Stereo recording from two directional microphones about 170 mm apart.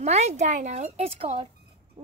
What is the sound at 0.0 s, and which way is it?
Speech, 40° right (ahead or behind).